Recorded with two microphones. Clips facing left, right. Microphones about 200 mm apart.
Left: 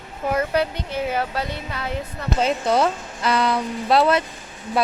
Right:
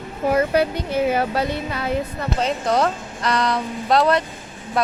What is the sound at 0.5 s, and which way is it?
Speech, 10° right (ahead or behind).